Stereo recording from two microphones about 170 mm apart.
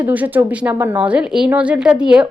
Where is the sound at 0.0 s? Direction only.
10° right (ahead or behind).